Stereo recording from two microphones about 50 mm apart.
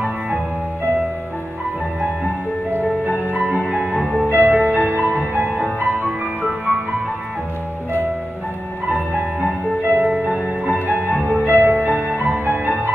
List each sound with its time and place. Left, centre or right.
3.3 s music: right
3.9 s music: centre
4.3 s music: right
5.6 s music: centre
9.8 s music: right
11.4 s music: right